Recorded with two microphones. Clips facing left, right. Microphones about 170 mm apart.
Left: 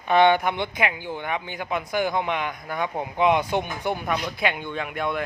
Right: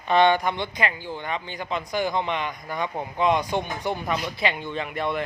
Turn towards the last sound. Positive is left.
turn(degrees=0)  # may be behind; listen again after turning